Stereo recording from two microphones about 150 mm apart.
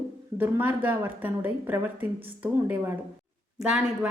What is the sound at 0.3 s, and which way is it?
A woman's voice, 10° right (ahead or behind).